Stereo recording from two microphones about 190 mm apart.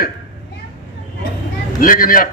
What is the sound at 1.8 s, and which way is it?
Speech, 45° left (ahead or behind).